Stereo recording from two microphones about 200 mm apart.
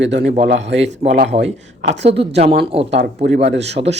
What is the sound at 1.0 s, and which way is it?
Speech, 50° right (ahead or behind).